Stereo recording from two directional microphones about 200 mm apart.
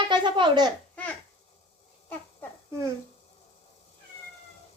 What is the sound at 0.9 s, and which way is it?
Babbling, 5° left (ahead or behind).